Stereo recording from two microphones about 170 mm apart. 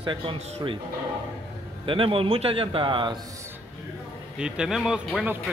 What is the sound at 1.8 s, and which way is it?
A man's voice, 30° right (ahead or behind).